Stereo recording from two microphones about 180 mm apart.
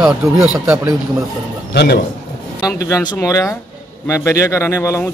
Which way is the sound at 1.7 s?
70° left (ahead or behind).